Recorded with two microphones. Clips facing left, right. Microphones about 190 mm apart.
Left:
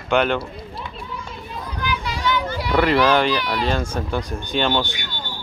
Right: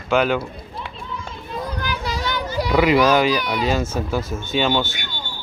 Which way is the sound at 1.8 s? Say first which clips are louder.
Left 5 dB; 40° right (ahead or behind).